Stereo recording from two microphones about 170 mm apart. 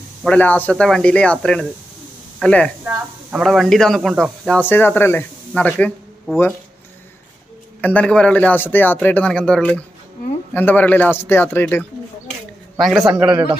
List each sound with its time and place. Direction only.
0.2 s a woman's voice: 10° left (ahead or behind)
7.8 s speech: 10° left (ahead or behind)
12.7 s a man's voice: centre (ahead or behind)
13.2 s speech: 30° right (ahead or behind)